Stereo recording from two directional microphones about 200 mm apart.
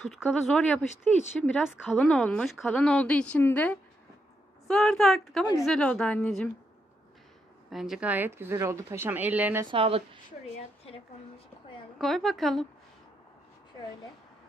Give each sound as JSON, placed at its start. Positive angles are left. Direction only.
{"t": 0.1, "sound": "a woman's voice", "side_deg": 0}
{"t": 7.7, "sound": "speech", "side_deg": 0}
{"t": 9.7, "sound": "a woman's voice", "side_deg": -25}
{"t": 12.0, "sound": "speech", "side_deg": 0}